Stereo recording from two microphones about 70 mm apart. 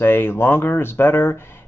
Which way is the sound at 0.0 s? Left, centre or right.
Left.